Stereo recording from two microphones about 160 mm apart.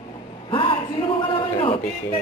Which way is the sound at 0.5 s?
30° left (ahead or behind).